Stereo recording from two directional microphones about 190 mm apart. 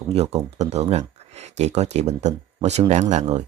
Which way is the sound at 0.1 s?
35° right (ahead or behind).